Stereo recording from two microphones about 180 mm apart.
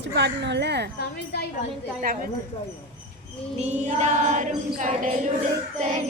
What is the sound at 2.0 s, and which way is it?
Speech, 55° right (ahead or behind).